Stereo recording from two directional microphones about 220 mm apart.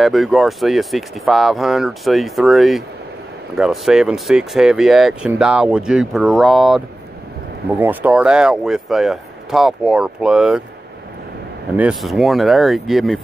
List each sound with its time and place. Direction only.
0.0 s speech: centre (ahead or behind)
7.8 s speech: 10° right (ahead or behind)
11.7 s speech: 5° right (ahead or behind)